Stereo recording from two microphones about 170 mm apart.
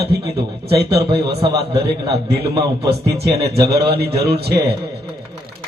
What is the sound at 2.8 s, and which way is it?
A man's voice, 70° right (ahead or behind).